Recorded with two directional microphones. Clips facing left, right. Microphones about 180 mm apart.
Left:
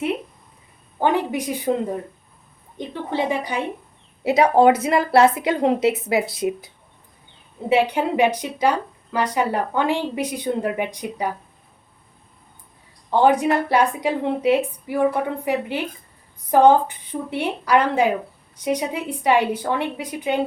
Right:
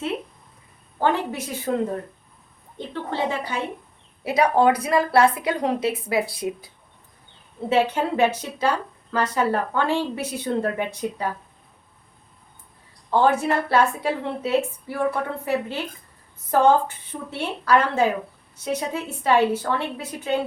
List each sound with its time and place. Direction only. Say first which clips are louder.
0.9 s a woman's voice: left 2 dB; 15° left (ahead or behind)
2.7 s a woman's voice: left 3 dB; 15° left (ahead or behind)
4.2 s a woman's voice: left 4 dB; 25° left (ahead or behind)
7.7 s a woman's voice: left 2 dB; 15° left (ahead or behind)
13.1 s a woman's voice: left 3 dB; 15° left (ahead or behind)